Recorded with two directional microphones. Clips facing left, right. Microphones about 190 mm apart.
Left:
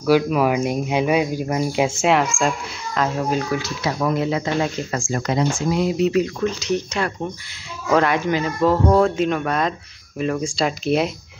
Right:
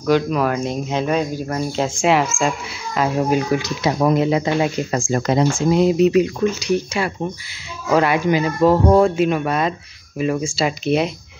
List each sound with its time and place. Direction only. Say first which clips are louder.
0.0 s speech: left 1 dB; 10° left (ahead or behind)
2.0 s speech: right 5 dB; centre (ahead or behind)
3.0 s speech: right 3 dB; 15° right (ahead or behind); by 5.5 s 35° right (ahead or behind)
5.7 s speech: right 6 dB; 25° right (ahead or behind); by 11.1 s centre (ahead or behind)